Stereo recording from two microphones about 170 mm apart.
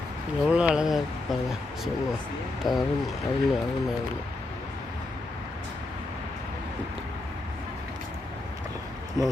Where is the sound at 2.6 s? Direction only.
Centre (ahead or behind).